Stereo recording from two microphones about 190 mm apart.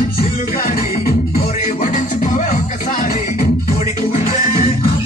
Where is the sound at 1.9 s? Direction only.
40° left (ahead or behind).